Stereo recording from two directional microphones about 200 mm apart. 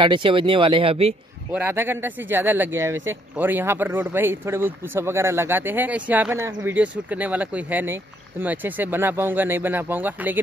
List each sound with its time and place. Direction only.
0.0 s speech: 25° right (ahead or behind)
1.5 s speech: 10° right (ahead or behind)